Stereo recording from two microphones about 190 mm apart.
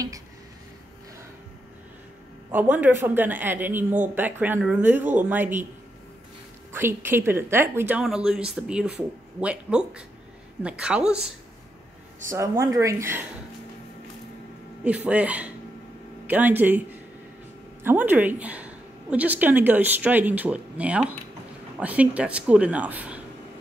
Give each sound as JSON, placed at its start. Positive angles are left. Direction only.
{"t": 2.5, "sound": "a woman's voice", "side_deg": -10}
{"t": 6.7, "sound": "a woman's voice", "side_deg": -10}
{"t": 12.3, "sound": "a woman's voice", "side_deg": -15}
{"t": 15.0, "sound": "a woman's voice", "side_deg": -10}
{"t": 17.8, "sound": "a woman's voice", "side_deg": -10}